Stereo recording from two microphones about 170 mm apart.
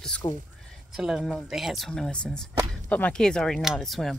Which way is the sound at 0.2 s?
25° left (ahead or behind).